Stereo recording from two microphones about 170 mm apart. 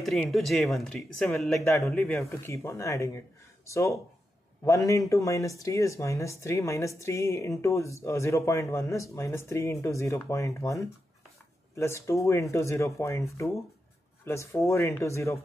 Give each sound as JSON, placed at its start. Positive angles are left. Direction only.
{"t": 0.0, "sound": "speech", "side_deg": 0}
{"t": 2.1, "sound": "speech", "side_deg": 15}